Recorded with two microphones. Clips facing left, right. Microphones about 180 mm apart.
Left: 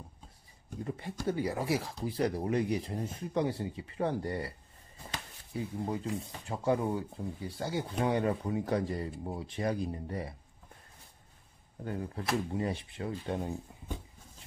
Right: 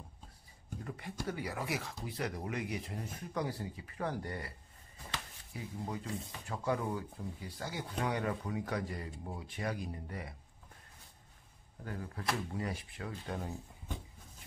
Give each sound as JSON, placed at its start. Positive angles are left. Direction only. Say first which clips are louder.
{"t": 0.8, "sound": "speech", "louder": "left 6 dB", "side_deg": 30}
{"t": 5.5, "sound": "speech", "louder": "left 7 dB", "side_deg": 30}
{"t": 11.8, "sound": "speech", "louder": "left 4 dB", "side_deg": 25}